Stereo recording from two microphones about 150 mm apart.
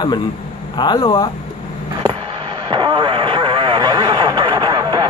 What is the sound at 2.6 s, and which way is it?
Vehicle, 30° right (ahead or behind).